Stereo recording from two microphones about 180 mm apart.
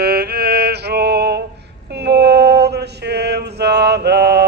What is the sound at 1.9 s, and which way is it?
Mantra, 65° right (ahead or behind).